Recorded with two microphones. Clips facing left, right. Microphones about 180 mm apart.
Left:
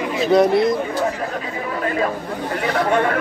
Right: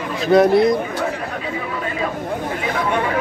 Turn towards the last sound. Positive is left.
turn(degrees=55)  # may be behind; listen again after turning